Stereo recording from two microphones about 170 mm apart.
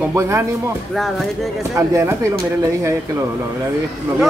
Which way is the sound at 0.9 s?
Centre (ahead or behind).